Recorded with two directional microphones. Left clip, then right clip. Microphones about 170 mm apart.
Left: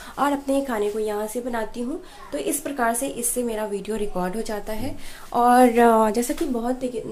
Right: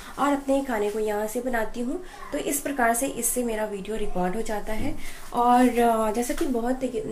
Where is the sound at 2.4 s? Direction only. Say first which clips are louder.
Left 1 dB; 15° left (ahead or behind).